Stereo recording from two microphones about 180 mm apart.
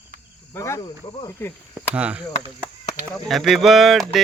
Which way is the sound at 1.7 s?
5° right (ahead or behind).